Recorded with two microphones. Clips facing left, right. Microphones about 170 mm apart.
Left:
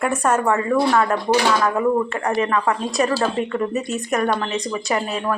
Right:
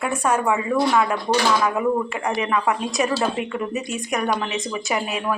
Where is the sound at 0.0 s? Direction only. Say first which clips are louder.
Left 2 dB; 10° right (ahead or behind).